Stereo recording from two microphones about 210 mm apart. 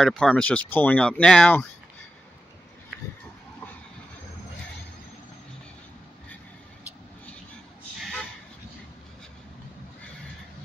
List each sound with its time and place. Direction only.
0.0 s speech: 5° left (ahead or behind)